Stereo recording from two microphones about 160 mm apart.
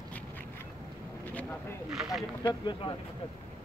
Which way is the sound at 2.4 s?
30° left (ahead or behind).